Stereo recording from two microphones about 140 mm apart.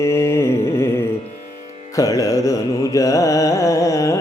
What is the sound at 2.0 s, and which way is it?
Mantra, 25° left (ahead or behind).